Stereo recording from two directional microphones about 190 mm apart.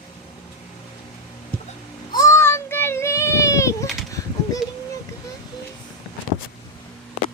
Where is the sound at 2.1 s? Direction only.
15° left (ahead or behind).